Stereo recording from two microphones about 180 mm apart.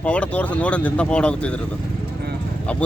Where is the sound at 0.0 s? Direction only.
5° left (ahead or behind).